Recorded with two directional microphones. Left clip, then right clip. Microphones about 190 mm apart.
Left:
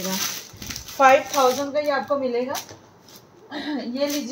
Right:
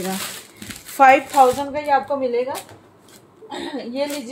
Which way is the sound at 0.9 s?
55° right (ahead or behind).